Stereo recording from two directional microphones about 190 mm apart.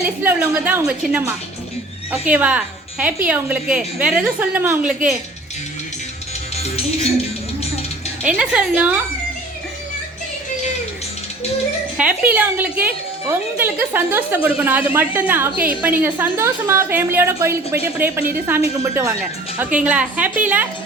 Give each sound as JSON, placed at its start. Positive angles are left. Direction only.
{"t": 0.2, "sound": "a woman's voice", "side_deg": -10}
{"t": 6.6, "sound": "music", "side_deg": 35}
{"t": 8.2, "sound": "a woman's voice", "side_deg": -5}
{"t": 11.9, "sound": "a woman's voice", "side_deg": -5}